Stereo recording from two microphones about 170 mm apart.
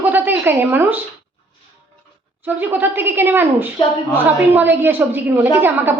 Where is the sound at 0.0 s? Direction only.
10° right (ahead or behind).